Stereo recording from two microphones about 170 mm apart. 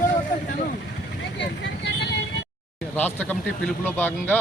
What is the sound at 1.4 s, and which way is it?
Vehicle, 90° left.